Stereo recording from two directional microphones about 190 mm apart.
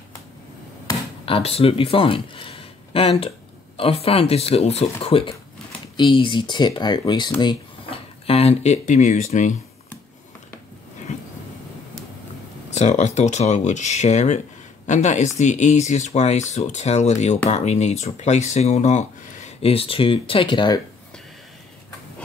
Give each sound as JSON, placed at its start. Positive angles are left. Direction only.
{"t": 1.2, "sound": "speech", "side_deg": 30}
{"t": 12.7, "sound": "speech", "side_deg": 35}